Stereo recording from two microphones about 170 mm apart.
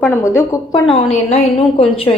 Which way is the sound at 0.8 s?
35° left (ahead or behind).